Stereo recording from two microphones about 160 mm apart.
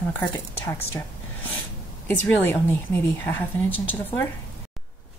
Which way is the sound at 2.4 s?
15° left (ahead or behind).